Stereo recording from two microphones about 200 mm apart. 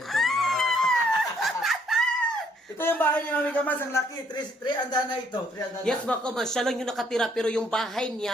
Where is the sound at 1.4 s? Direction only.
Centre (ahead or behind).